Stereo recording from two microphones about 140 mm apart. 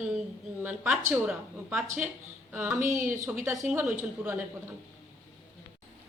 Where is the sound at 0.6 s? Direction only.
10° right (ahead or behind).